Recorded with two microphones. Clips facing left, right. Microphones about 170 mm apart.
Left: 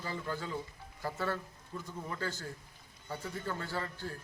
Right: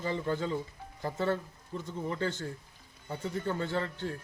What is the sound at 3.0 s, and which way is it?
A man's voice, 25° right (ahead or behind).